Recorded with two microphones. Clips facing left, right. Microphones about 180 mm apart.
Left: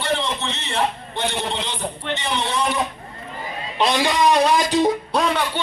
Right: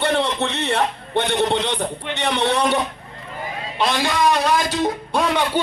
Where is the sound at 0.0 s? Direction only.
60° right (ahead or behind).